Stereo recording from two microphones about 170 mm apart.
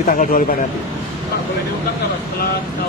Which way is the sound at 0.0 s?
50° left (ahead or behind).